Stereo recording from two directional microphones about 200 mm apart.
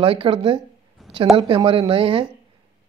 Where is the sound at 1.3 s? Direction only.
25° right (ahead or behind).